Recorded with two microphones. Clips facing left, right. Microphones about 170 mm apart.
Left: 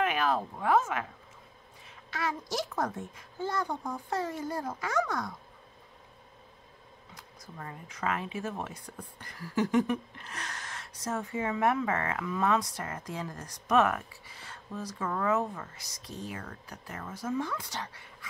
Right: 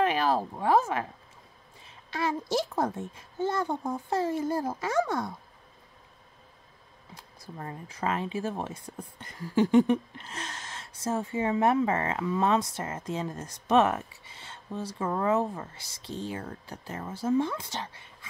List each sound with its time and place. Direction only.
0.0 s a woman's voice: 30° right (ahead or behind)
7.2 s speech: 30° right (ahead or behind)